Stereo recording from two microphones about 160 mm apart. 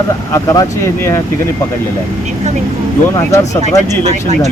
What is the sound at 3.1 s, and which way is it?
Speech, 20° left (ahead or behind).